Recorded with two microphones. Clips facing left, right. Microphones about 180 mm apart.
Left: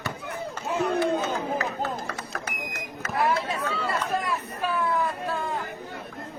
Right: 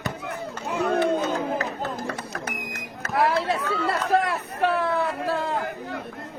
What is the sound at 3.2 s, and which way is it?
Speech, 75° right (ahead or behind).